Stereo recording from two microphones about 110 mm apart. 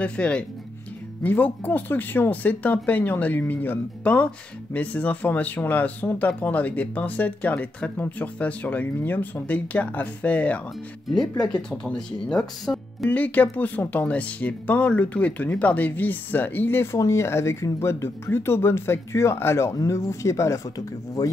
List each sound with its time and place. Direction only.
0.0 s speech: 10° left (ahead or behind)
13.1 s speech: 15° left (ahead or behind); by 21.3 s 30° left (ahead or behind)